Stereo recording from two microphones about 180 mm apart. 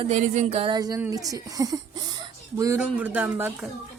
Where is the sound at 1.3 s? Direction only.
20° right (ahead or behind).